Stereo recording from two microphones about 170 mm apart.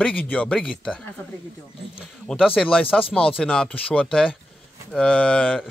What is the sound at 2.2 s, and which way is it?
A man's voice, 5° left (ahead or behind).